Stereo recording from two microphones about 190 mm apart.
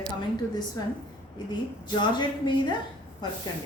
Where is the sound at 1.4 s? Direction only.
20° left (ahead or behind).